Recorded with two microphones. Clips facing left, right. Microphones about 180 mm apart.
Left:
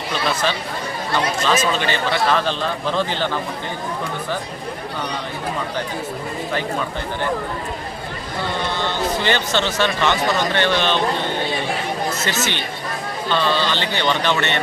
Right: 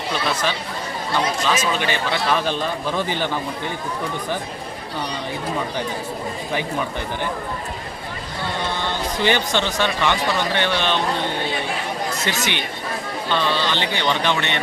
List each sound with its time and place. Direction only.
1.5 s a man's voice: 10° right (ahead or behind)
9.2 s a man's voice: 15° right (ahead or behind)
12.2 s a man's voice: 15° right (ahead or behind)